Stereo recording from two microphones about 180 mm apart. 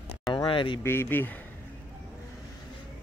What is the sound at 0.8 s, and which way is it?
Speech, 15° left (ahead or behind).